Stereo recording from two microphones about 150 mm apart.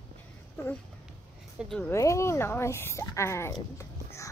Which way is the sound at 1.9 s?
20° left (ahead or behind).